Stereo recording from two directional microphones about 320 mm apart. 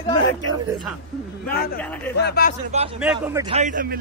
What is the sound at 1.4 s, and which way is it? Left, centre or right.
Speech, left.